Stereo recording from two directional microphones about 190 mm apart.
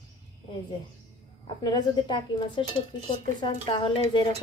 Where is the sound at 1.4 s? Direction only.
20° left (ahead or behind).